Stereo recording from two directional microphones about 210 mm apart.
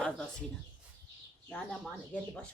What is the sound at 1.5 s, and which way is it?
Speech, 5° left (ahead or behind).